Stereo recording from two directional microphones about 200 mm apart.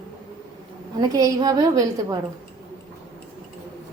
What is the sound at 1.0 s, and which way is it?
Speech, 20° right (ahead or behind).